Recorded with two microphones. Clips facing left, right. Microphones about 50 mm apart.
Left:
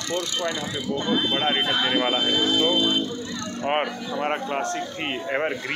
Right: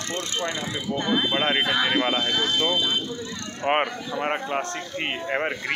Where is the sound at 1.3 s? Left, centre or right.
Right.